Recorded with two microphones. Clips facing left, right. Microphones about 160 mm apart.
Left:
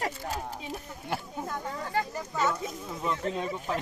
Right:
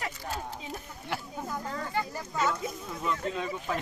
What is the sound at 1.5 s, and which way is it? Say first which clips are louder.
Children playing: even; 5° right (ahead or behind).